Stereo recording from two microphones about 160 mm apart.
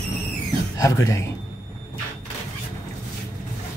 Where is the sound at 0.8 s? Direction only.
20° left (ahead or behind).